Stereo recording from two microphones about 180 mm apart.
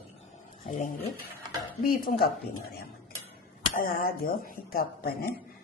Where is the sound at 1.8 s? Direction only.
55° left (ahead or behind).